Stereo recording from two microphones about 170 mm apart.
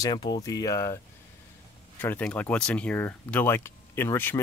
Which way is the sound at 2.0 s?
10° left (ahead or behind).